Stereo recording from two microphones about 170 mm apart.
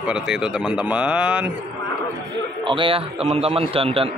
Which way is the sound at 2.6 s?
30° right (ahead or behind).